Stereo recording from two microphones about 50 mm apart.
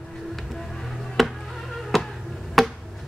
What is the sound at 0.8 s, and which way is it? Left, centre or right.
Music, centre.